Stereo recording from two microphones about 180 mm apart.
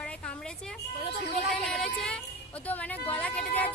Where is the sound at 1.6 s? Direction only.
5° left (ahead or behind).